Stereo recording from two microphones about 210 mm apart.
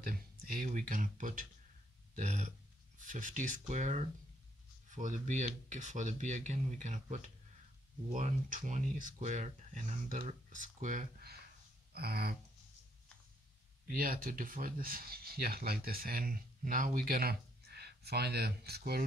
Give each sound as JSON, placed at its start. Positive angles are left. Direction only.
{"t": 0.0, "sound": "speech", "side_deg": -40}
{"t": 11.9, "sound": "speech", "side_deg": -50}
{"t": 13.8, "sound": "speech", "side_deg": -45}